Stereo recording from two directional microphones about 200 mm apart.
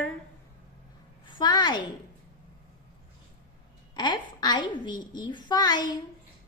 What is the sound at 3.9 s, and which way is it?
A woman's voice, 20° left (ahead or behind).